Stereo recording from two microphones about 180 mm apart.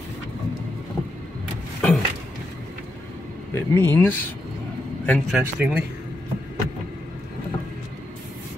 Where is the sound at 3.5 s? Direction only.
10° left (ahead or behind).